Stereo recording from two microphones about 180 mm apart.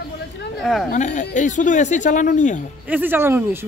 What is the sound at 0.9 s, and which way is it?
Speech, 45° left (ahead or behind).